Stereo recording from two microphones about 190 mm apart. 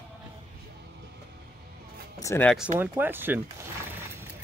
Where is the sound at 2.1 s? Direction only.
15° left (ahead or behind).